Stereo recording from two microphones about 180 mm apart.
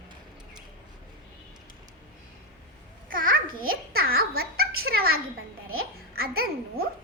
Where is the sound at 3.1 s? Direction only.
50° right (ahead or behind).